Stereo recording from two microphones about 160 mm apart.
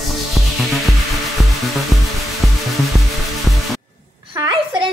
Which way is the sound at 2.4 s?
Centre (ahead or behind).